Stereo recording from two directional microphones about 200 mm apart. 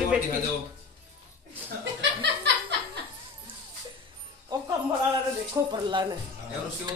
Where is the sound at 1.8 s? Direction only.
60° right (ahead or behind).